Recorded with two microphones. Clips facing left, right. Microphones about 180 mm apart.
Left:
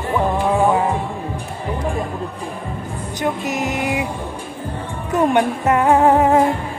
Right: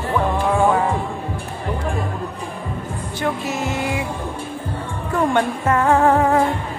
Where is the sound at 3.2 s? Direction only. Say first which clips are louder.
Left 2 dB; 15° left (ahead or behind).